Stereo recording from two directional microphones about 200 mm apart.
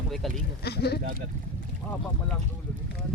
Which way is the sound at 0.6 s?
55° left (ahead or behind).